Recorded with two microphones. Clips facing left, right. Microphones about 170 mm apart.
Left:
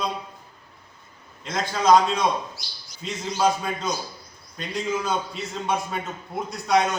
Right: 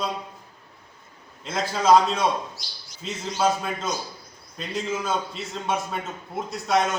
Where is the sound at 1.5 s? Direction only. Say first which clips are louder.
Even; 5° right (ahead or behind).